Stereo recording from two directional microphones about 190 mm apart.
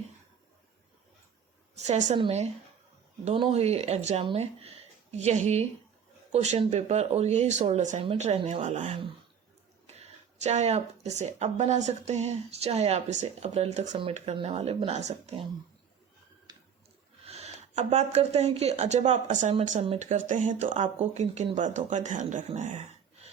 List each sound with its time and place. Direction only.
1.7 s a woman's voice: 35° right (ahead or behind)
17.2 s speech: 35° right (ahead or behind)